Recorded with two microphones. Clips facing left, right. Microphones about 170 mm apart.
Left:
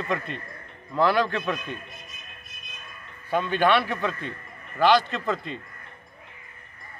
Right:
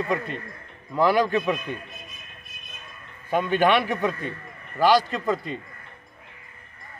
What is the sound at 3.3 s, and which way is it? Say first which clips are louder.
Speech: right 1 dB; 15° right (ahead or behind).